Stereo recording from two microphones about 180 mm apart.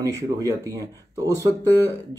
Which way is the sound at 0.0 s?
20° right (ahead or behind).